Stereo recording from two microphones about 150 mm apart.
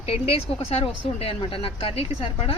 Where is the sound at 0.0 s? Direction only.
40° left (ahead or behind).